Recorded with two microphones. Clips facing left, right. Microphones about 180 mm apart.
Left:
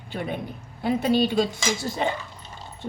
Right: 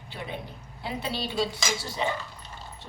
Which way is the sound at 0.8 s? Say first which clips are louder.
Left 11 dB; 50° left (ahead or behind).